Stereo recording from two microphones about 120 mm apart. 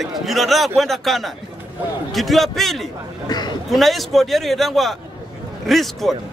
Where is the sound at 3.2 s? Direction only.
35° left (ahead or behind).